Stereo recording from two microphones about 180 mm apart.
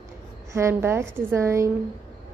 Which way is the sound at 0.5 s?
15° right (ahead or behind).